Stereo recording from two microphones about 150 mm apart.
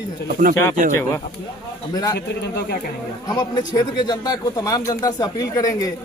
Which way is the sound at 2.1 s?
90° left.